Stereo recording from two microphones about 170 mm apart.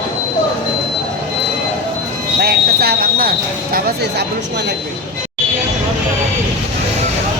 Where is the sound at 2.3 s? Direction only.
65° right (ahead or behind).